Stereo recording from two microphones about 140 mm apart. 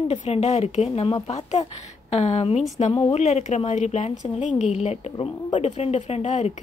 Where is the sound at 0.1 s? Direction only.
50° left (ahead or behind).